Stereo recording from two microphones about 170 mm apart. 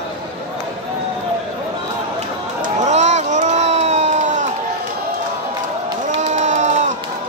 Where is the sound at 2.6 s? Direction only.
45° right (ahead or behind).